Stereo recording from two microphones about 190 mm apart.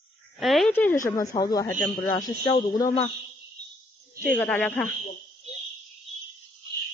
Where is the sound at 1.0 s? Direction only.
15° left (ahead or behind).